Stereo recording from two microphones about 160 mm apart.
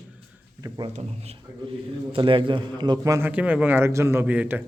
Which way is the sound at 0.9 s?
40° right (ahead or behind).